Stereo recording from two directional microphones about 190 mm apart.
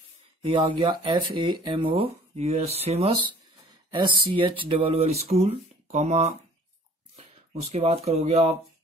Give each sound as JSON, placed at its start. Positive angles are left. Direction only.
{"t": 0.4, "sound": "speech", "side_deg": -25}
{"t": 7.7, "sound": "speech", "side_deg": -35}